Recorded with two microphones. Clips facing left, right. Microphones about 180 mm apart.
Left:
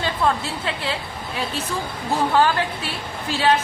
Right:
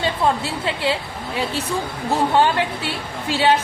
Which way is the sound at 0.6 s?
30° right (ahead or behind).